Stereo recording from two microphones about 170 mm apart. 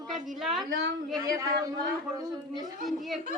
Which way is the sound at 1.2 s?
20° right (ahead or behind).